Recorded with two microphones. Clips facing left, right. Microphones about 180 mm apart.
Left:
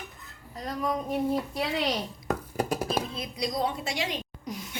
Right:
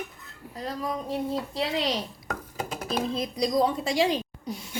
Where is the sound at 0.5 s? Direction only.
30° right (ahead or behind).